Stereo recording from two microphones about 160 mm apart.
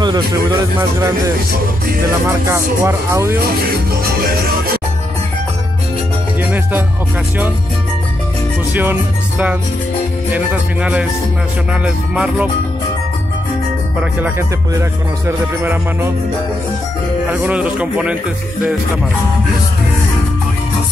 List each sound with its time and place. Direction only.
0.0 s speech: 25° right (ahead or behind)
10.3 s speech: 10° right (ahead or behind)
14.7 s speech: 15° right (ahead or behind)
17.3 s speech: 5° right (ahead or behind)